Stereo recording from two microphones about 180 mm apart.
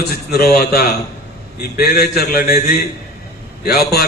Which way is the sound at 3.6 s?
60° left (ahead or behind).